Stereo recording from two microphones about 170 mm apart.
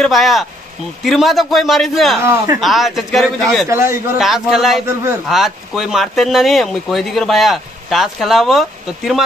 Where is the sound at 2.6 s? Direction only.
Centre (ahead or behind).